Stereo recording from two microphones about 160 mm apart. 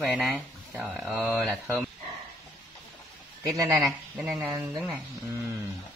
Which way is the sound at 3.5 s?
20° right (ahead or behind).